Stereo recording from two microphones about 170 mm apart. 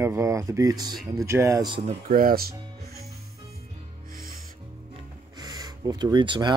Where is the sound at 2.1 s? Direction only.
55° right (ahead or behind).